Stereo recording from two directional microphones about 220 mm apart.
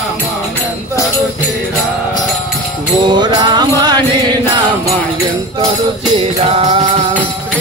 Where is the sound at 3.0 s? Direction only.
20° right (ahead or behind).